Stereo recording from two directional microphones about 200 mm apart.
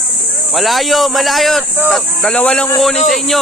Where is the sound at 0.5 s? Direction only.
Centre (ahead or behind).